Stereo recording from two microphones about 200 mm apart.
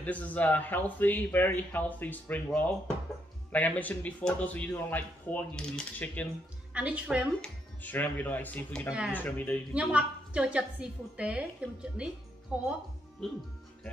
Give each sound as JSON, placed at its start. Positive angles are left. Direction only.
{"t": 0.0, "sound": "a man's voice", "side_deg": 5}
{"t": 6.7, "sound": "a woman's voice", "side_deg": -5}
{"t": 7.8, "sound": "a man's voice", "side_deg": 10}
{"t": 9.8, "sound": "a woman's voice", "side_deg": -5}